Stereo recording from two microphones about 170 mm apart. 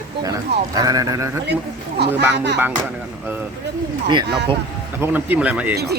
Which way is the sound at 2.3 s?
90° right.